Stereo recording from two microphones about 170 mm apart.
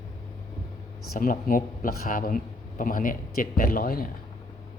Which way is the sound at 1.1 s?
55° left (ahead or behind).